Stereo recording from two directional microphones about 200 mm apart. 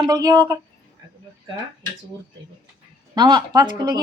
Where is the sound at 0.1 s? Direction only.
20° right (ahead or behind).